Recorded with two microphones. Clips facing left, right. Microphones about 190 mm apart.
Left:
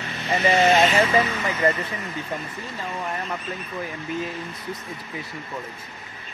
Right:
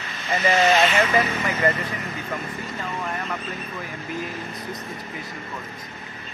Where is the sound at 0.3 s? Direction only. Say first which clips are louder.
Left 1 dB; 25° left (ahead or behind).